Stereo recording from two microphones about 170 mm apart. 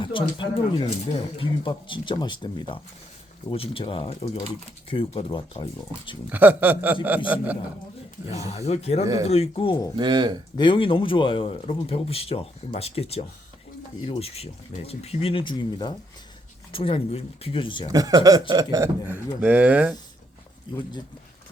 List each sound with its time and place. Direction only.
0.0 s speech: 30° left (ahead or behind)
6.3 s speech: 10° right (ahead or behind)
8.4 s speech: 40° left (ahead or behind)
10.0 s speech: 25° right (ahead or behind)
10.6 s speech: 30° left (ahead or behind)
17.9 s speech: 20° right (ahead or behind)